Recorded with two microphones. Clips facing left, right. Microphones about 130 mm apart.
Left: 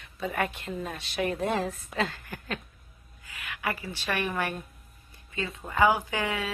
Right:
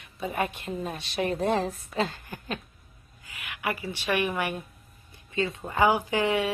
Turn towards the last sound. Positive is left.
turn(degrees=-25)  # may be behind; listen again after turning